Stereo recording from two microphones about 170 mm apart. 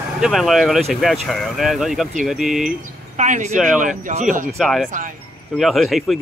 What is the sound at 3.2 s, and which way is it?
Speech, 45° right (ahead or behind).